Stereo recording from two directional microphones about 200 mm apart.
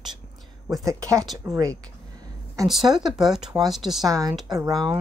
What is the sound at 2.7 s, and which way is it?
Speech, centre (ahead or behind).